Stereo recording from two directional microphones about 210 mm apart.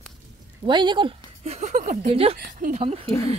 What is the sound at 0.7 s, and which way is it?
Speech, 20° right (ahead or behind).